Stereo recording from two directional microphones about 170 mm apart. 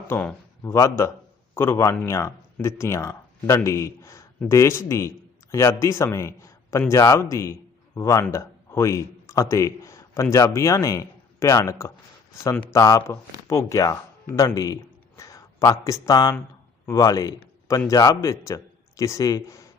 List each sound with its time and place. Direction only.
0.1 s a man's voice: 10° left (ahead or behind)